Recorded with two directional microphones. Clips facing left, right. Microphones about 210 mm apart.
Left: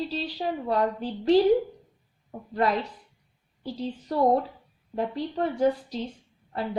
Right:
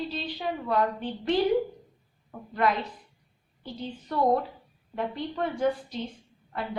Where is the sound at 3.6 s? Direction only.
35° left (ahead or behind).